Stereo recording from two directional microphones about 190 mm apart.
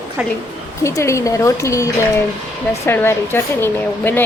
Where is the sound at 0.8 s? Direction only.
15° left (ahead or behind).